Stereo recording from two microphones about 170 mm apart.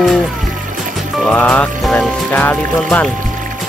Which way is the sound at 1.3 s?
10° left (ahead or behind).